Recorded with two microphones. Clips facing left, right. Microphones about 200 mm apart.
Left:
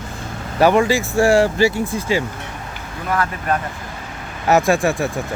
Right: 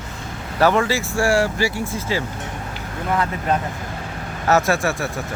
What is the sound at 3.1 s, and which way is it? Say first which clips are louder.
Speech: even; 20° right (ahead or behind).